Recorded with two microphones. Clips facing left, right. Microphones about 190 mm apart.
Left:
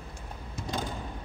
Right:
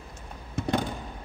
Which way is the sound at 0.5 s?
60° right (ahead or behind).